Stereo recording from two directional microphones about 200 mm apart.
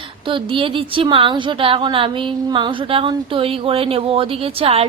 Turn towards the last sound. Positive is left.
turn(degrees=-30)  # may be behind; listen again after turning